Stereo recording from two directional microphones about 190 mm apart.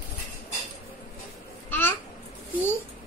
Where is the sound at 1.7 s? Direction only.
10° left (ahead or behind).